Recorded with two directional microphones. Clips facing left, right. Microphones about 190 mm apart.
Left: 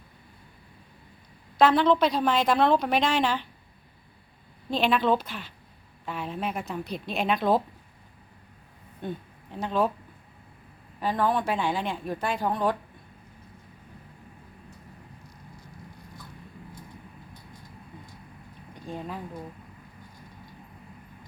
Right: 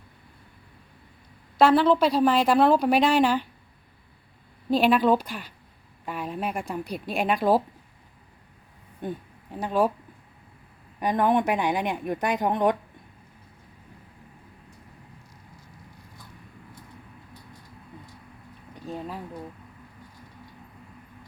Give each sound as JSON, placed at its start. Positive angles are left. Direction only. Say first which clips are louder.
{"t": 1.5, "sound": "a woman's voice", "louder": "right 2 dB", "side_deg": -5}
{"t": 4.7, "sound": "a woman's voice", "louder": "right 4 dB", "side_deg": -10}
{"t": 9.0, "sound": "speech", "louder": "right 2 dB", "side_deg": -10}
{"t": 11.0, "sound": "a woman's voice", "louder": "right 3 dB", "side_deg": -20}
{"t": 18.9, "sound": "speech", "louder": "right 1 dB", "side_deg": -5}